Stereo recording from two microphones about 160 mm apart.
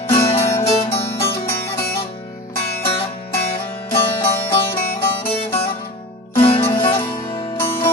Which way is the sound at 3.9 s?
35° left (ahead or behind).